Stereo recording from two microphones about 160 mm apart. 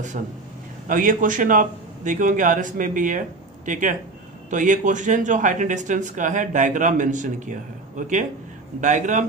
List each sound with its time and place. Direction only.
0.8 s a man's voice: 55° right (ahead or behind)